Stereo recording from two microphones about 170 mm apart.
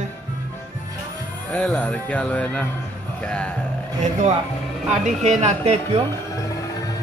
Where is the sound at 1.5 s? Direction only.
10° left (ahead or behind).